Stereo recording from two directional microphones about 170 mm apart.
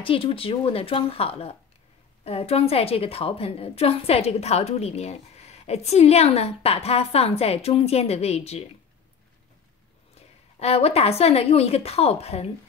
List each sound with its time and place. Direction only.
0.0 s a woman's voice: 30° left (ahead or behind)
10.1 s a woman's voice: 40° left (ahead or behind)